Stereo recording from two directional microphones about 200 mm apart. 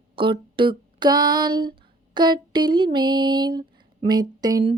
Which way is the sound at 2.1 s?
20° right (ahead or behind).